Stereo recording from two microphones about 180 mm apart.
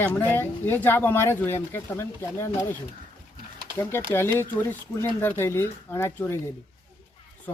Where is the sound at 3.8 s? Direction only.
15° left (ahead or behind).